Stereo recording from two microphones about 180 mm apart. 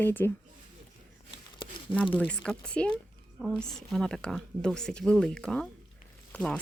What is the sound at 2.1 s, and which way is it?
Speech, 5° left (ahead or behind).